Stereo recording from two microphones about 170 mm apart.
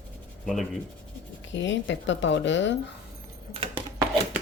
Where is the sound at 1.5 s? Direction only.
90° left.